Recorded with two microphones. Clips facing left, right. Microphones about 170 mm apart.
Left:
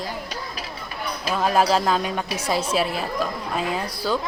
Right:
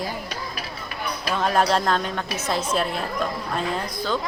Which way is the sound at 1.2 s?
5° left (ahead or behind).